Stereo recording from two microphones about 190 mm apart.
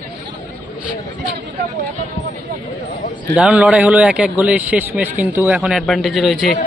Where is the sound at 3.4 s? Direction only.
5° right (ahead or behind).